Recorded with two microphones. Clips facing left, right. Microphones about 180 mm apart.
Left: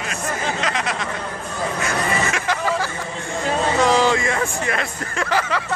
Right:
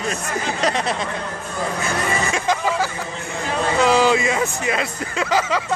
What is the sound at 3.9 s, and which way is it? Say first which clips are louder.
Speech: right 1 dB; 10° right (ahead or behind).